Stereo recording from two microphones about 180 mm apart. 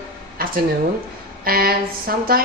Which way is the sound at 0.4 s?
55° right (ahead or behind).